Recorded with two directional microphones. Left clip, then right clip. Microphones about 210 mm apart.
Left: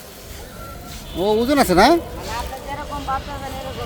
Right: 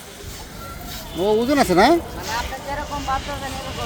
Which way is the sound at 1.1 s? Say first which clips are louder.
Left 1 dB; 10° left (ahead or behind).